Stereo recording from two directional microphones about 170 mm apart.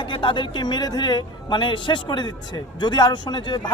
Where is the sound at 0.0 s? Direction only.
30° left (ahead or behind).